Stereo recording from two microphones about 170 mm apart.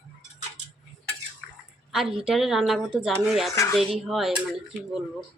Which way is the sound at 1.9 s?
5° right (ahead or behind).